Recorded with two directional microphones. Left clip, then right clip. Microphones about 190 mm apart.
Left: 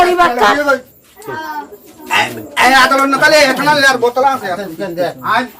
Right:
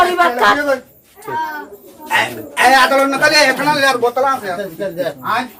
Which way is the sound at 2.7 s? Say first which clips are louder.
Left 1 dB; 35° left (ahead or behind).